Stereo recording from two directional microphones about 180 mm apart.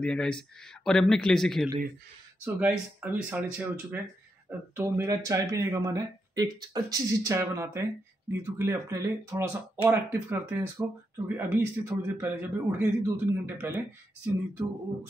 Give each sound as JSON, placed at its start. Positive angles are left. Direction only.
{"t": 0.0, "sound": "speech", "side_deg": 5}
{"t": 2.4, "sound": "speech", "side_deg": -10}